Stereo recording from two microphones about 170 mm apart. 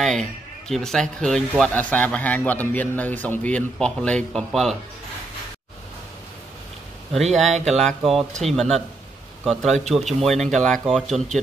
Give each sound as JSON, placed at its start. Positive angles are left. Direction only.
{"t": 0.0, "sound": "a man's voice", "side_deg": 5}
{"t": 7.6, "sound": "a man's voice", "side_deg": 0}